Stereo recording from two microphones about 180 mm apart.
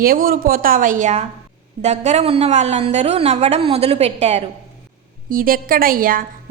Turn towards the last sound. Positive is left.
turn(degrees=-50)  # may be behind; listen again after turning